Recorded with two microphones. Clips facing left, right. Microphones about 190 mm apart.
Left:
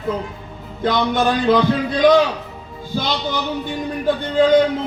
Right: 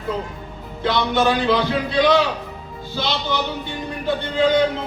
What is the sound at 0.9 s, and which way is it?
Speech, 50° left (ahead or behind).